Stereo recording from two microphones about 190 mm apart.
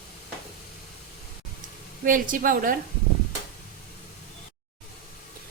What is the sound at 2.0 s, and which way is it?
Speech, 45° right (ahead or behind).